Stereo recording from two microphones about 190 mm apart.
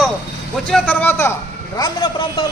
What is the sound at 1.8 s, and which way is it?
Speech, 25° left (ahead or behind).